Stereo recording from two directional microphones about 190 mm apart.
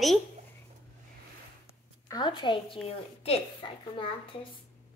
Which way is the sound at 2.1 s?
25° left (ahead or behind).